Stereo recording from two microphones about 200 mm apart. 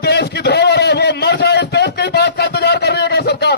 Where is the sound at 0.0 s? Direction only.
55° left (ahead or behind).